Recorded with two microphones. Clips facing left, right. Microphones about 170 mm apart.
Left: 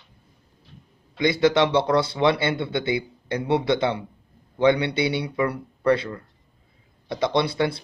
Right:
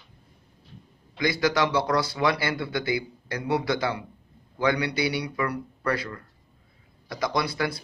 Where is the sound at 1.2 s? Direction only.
25° left (ahead or behind).